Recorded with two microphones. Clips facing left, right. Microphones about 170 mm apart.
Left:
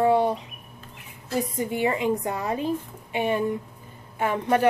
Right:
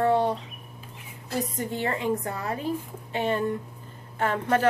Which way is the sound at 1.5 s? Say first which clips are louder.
Left 4 dB; 10° left (ahead or behind).